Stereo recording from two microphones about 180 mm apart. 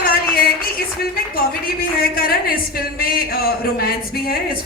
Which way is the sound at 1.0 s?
55° left (ahead or behind).